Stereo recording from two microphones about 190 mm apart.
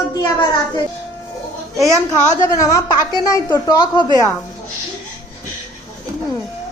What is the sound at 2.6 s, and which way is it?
A child's voice, 20° left (ahead or behind).